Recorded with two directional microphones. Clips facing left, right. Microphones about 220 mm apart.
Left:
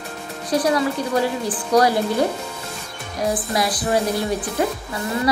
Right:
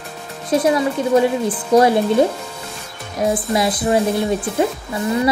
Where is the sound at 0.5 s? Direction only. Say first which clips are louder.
Right 3 dB; 25° right (ahead or behind).